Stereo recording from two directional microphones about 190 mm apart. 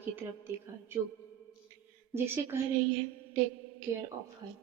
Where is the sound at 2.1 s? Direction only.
10° right (ahead or behind).